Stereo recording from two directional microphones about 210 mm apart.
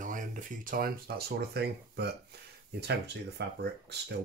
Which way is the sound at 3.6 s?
50° right (ahead or behind).